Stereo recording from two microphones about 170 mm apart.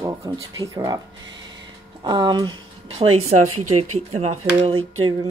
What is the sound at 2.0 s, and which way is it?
Speech, 25° right (ahead or behind).